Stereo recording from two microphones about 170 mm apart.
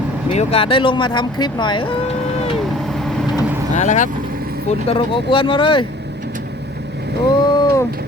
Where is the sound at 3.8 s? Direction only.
45° left (ahead or behind).